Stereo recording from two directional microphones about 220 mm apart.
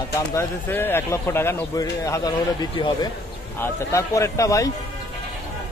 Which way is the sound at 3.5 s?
10° left (ahead or behind).